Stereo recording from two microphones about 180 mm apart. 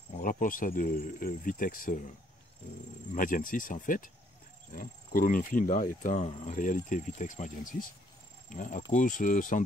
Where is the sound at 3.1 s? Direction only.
50° left (ahead or behind).